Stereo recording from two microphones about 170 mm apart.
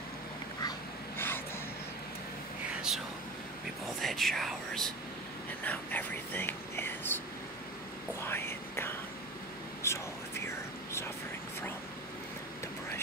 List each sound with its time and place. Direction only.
0.6 s dog: 25° left (ahead or behind)
3.8 s speech: centre (ahead or behind)
5.6 s whispering: 10° left (ahead or behind)
8.2 s speech: 15° left (ahead or behind)
9.8 s whispering: 15° left (ahead or behind)